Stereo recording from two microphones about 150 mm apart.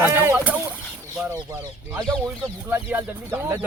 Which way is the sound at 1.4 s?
20° right (ahead or behind).